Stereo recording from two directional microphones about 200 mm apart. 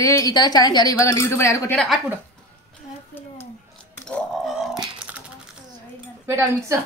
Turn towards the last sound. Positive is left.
turn(degrees=-15)  # may be behind; listen again after turning